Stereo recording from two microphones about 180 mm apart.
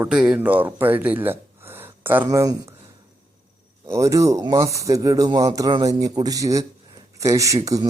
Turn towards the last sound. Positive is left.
turn(degrees=-20)  # may be behind; listen again after turning